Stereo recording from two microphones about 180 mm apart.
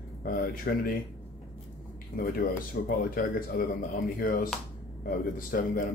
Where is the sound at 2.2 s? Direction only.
55° left (ahead or behind).